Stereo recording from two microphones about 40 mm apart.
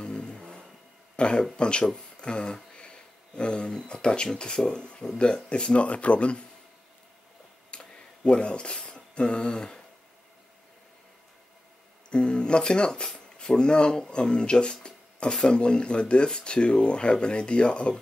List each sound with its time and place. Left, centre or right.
0.0 s vehicle: centre
1.1 s a man's voice: left
4.6 s speech: centre; by 6.4 s left
7.7 s a sound: left
8.2 s speech: left
12.1 s speech: left